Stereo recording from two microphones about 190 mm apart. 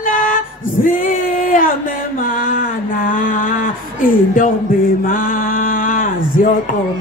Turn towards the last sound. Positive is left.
turn(degrees=45)  # may be behind; listen again after turning